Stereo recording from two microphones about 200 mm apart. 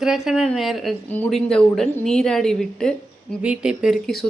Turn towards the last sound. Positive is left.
turn(degrees=0)  # may be behind; listen again after turning